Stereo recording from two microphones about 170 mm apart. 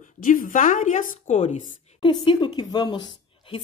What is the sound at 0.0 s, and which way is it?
Speech, 50° left (ahead or behind).